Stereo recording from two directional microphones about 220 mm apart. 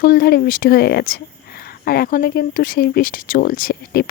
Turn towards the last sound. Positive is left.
turn(degrees=45)  # may be behind; listen again after turning